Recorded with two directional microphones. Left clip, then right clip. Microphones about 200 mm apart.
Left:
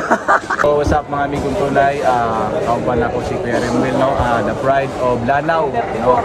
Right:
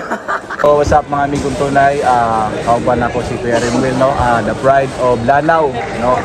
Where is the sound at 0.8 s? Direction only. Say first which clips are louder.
Right 5 dB; centre (ahead or behind).